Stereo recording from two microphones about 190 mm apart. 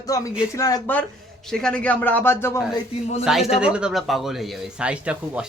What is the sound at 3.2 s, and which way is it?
Speech, centre (ahead or behind).